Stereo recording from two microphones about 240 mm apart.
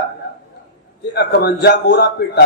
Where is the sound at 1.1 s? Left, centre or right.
Left.